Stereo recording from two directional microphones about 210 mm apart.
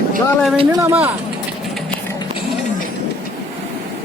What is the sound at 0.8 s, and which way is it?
Speech, 10° right (ahead or behind).